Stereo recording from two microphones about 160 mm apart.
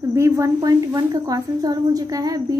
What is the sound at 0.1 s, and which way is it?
A woman's voice, 20° right (ahead or behind).